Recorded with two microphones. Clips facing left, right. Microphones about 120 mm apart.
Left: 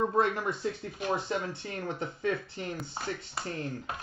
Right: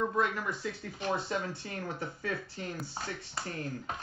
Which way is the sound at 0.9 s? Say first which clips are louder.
Right 1 dB; 15° left (ahead or behind).